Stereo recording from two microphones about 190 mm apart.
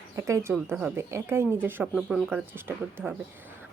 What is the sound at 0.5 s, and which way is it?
Speech, 5° right (ahead or behind).